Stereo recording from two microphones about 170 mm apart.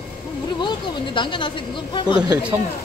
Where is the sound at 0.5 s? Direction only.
25° left (ahead or behind).